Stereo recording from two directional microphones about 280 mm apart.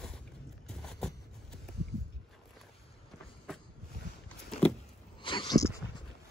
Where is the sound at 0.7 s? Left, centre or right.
Centre.